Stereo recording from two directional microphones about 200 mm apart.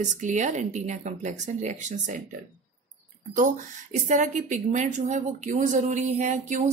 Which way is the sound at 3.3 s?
40° right (ahead or behind).